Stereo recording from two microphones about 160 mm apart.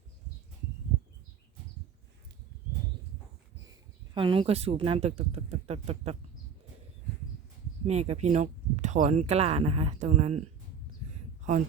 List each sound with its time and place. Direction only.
4.1 s speech: 30° right (ahead or behind)
7.9 s speech: 40° right (ahead or behind)